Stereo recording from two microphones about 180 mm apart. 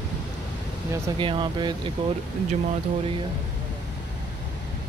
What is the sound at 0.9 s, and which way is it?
Speech, 25° right (ahead or behind).